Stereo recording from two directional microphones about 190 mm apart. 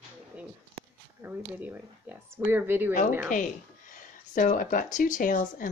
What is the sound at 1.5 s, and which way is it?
Speech, 10° right (ahead or behind).